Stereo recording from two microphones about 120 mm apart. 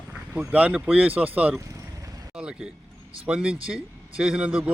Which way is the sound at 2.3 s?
5° right (ahead or behind).